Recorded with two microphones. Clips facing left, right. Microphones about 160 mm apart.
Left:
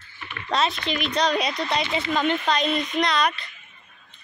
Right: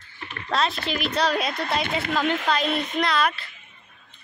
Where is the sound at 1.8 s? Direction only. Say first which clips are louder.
Even; 55° right (ahead or behind).